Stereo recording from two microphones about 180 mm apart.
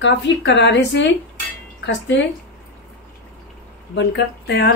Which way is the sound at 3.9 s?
75° left (ahead or behind).